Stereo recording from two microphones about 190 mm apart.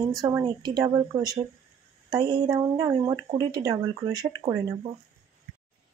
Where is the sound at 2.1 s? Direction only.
25° right (ahead or behind).